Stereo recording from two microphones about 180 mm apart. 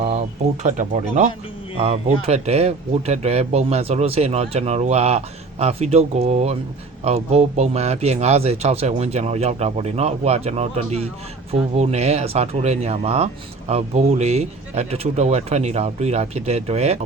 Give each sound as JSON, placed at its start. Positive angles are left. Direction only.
{"t": 0.6, "sound": "speech", "side_deg": -40}